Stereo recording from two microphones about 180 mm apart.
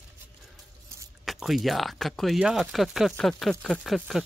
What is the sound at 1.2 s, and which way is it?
Speech, centre (ahead or behind).